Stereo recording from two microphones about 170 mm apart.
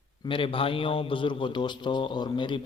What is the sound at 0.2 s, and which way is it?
A man's voice, 30° left (ahead or behind).